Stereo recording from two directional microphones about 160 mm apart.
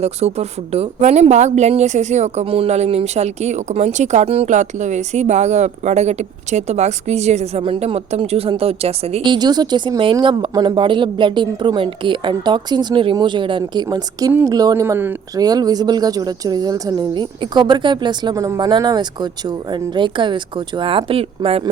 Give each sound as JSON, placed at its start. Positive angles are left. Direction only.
{"t": 0.0, "sound": "a woman's voice", "side_deg": -40}